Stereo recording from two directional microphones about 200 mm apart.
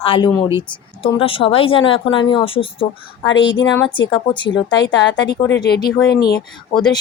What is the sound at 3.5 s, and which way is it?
A woman's voice, 70° left (ahead or behind).